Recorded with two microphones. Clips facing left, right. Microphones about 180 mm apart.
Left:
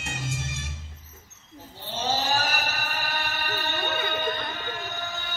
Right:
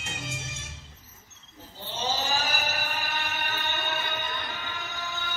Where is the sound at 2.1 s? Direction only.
55° left (ahead or behind).